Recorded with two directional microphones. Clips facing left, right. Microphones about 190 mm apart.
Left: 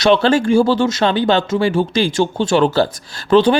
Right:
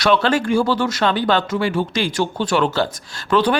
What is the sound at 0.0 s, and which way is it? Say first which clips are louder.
Speech: left 4 dB; 30° left (ahead or behind).